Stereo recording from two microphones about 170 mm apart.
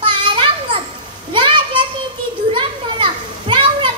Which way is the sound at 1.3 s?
30° right (ahead or behind).